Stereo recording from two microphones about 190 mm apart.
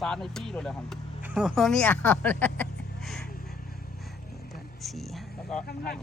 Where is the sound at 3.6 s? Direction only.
50° left (ahead or behind).